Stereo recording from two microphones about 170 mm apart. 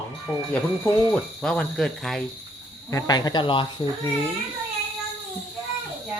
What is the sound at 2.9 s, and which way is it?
Speech, 20° left (ahead or behind).